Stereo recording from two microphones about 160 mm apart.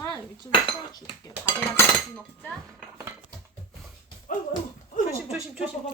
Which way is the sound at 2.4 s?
Centre (ahead or behind).